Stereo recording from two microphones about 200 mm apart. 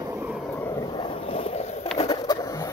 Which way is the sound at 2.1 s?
20° left (ahead or behind).